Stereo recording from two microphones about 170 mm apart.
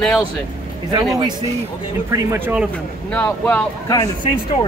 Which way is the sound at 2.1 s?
10° right (ahead or behind).